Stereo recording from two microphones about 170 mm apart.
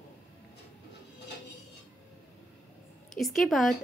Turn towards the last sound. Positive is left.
turn(degrees=0)  # may be behind; listen again after turning